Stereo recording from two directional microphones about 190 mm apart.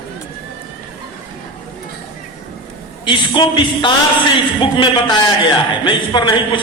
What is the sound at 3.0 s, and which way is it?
Speech, 25° left (ahead or behind).